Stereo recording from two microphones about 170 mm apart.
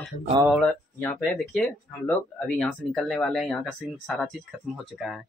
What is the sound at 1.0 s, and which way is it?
Speech, 10° left (ahead or behind).